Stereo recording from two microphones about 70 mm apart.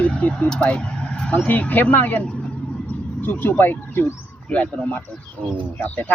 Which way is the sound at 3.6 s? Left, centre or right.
Left.